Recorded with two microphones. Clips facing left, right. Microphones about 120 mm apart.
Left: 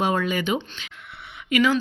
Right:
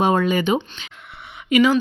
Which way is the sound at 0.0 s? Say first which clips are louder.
Right 5 dB; 30° right (ahead or behind).